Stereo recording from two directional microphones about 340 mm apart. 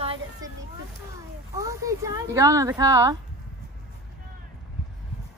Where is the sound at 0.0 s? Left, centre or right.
Centre.